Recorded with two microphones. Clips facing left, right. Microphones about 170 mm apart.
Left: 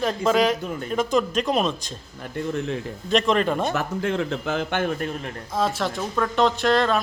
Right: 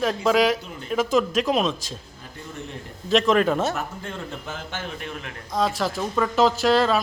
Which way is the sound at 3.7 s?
90° left.